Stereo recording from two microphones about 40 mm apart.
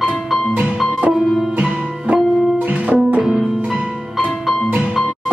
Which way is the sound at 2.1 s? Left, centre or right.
Right.